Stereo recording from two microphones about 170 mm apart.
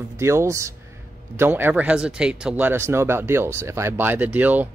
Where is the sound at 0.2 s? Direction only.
15° right (ahead or behind).